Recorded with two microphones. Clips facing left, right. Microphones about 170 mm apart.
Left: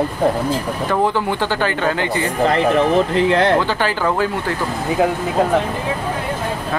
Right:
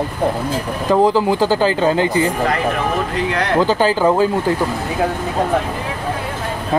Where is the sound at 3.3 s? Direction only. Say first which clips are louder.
Left 5 dB; 30° left (ahead or behind).